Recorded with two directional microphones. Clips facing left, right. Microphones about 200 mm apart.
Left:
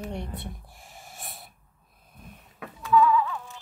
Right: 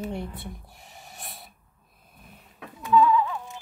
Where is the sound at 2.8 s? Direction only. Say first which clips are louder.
Right 1 dB; 25° right (ahead or behind).